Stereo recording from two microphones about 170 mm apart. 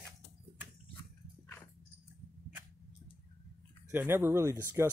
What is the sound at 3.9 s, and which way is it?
Speech, 15° right (ahead or behind).